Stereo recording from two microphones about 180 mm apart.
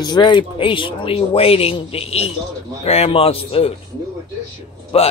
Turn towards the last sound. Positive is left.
turn(degrees=35)  # may be behind; listen again after turning